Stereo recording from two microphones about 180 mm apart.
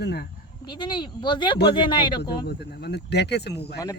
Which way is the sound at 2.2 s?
60° left (ahead or behind).